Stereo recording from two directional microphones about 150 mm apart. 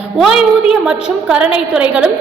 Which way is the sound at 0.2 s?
5° right (ahead or behind).